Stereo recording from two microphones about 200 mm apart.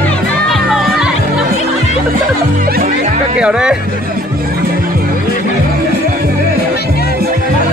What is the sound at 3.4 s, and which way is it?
Speech, 5° right (ahead or behind).